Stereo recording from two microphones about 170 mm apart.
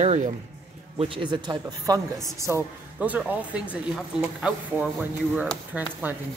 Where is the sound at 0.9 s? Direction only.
30° right (ahead or behind).